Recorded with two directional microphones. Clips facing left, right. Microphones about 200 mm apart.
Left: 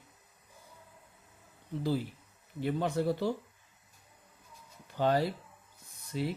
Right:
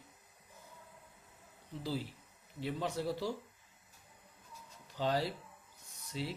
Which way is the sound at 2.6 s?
55° left (ahead or behind).